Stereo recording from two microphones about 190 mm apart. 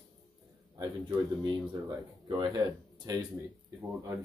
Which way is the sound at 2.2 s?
25° right (ahead or behind).